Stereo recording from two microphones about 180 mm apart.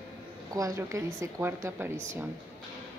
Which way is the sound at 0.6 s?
15° right (ahead or behind).